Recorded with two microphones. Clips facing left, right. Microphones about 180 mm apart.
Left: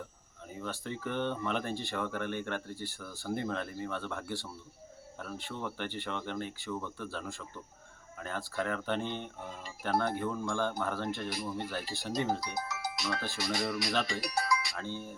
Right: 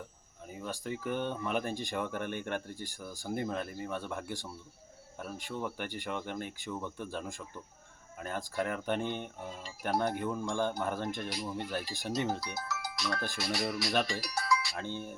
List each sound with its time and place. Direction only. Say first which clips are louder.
0.6 s speech: right 1 dB; 10° right (ahead or behind)
12.4 s speech: left 2 dB; 20° left (ahead or behind)
14.2 s speech: even; 20° left (ahead or behind)
14.8 s speech: right 1 dB; 20° right (ahead or behind)